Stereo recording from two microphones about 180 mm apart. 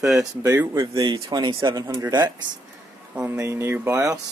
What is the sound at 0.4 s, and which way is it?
Speech, 20° right (ahead or behind).